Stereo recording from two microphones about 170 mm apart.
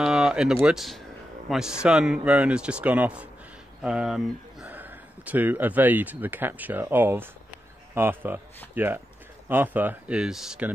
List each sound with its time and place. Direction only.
0.0 s a man's voice: 5° right (ahead or behind)